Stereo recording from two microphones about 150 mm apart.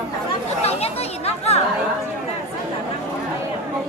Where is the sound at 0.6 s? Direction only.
45° left (ahead or behind).